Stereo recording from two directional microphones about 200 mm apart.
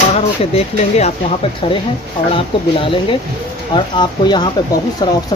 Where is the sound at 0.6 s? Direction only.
35° left (ahead or behind).